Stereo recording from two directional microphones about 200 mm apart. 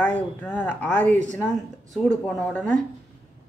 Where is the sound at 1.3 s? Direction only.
5° left (ahead or behind).